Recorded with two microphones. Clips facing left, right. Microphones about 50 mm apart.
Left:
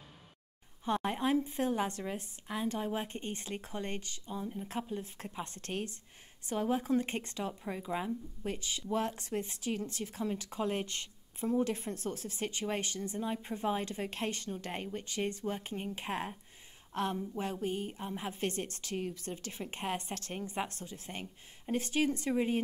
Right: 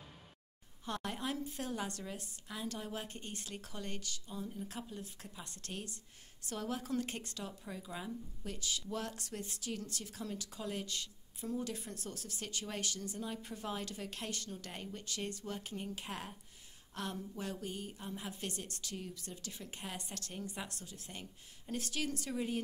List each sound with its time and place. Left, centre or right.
0.8 s a woman's voice: left